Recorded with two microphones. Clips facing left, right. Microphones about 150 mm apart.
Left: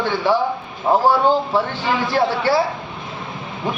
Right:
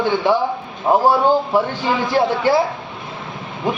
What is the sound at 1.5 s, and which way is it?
Speech, 15° right (ahead or behind).